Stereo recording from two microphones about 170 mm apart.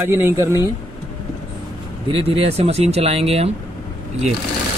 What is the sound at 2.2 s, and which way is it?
Speech, 35° right (ahead or behind).